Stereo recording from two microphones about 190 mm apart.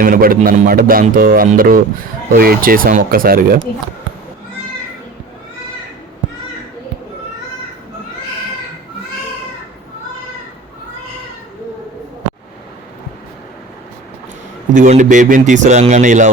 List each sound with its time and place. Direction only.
0.0 s speech: 50° right (ahead or behind)
14.7 s a man's voice: 40° right (ahead or behind)